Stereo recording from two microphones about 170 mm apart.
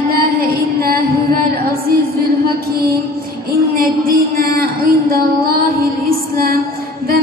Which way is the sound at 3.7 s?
60° right (ahead or behind).